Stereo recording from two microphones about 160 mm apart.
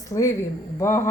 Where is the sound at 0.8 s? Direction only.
20° left (ahead or behind).